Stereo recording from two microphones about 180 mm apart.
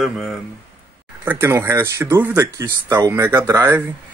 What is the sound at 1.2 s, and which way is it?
Speech, 10° right (ahead or behind).